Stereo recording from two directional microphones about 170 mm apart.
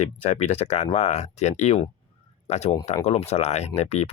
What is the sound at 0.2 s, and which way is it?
Speech, 40° left (ahead or behind).